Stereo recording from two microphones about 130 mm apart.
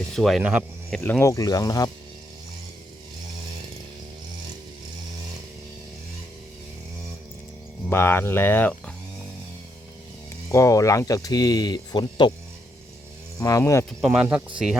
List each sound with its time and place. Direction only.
0.1 s speech: centre (ahead or behind)
1.2 s speech: 25° left (ahead or behind)
7.9 s speech: 20° left (ahead or behind)
10.5 s speech: 25° left (ahead or behind)
13.4 s speech: 25° left (ahead or behind)
14.0 s speech: 5° right (ahead or behind)